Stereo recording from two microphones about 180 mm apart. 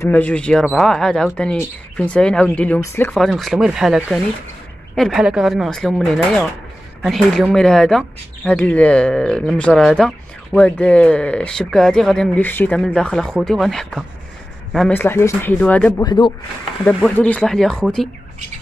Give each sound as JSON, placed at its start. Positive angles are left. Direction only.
{"t": 0.0, "sound": "speech", "side_deg": 10}
{"t": 3.2, "sound": "speech", "side_deg": 0}
{"t": 16.0, "sound": "speech", "side_deg": 25}
{"t": 16.8, "sound": "speech", "side_deg": 5}